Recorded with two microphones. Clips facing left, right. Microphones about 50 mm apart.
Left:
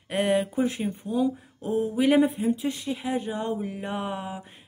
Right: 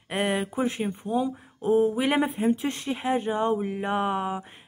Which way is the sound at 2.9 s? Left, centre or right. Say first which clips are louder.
Right 6 dB; right.